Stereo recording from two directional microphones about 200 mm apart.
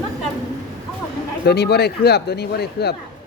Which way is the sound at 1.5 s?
55° left (ahead or behind).